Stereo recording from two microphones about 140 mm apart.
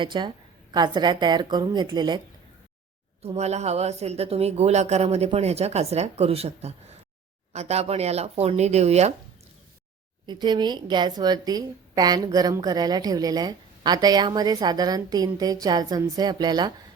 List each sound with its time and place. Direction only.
0.0 s a woman's voice: 35° right (ahead or behind)
3.2 s speech: 50° right (ahead or behind)
10.2 s a woman's voice: 30° right (ahead or behind)